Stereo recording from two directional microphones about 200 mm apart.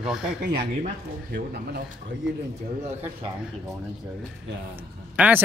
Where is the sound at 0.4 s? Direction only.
50° right (ahead or behind).